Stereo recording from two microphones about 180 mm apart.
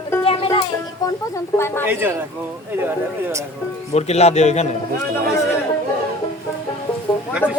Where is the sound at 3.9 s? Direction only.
35° left (ahead or behind).